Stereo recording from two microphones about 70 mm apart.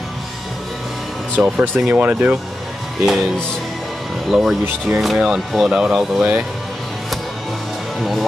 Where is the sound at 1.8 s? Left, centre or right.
Right.